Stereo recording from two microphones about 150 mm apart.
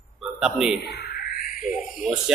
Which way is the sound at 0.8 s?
90° left.